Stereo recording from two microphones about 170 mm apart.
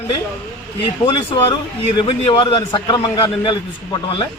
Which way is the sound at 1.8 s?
30° left (ahead or behind).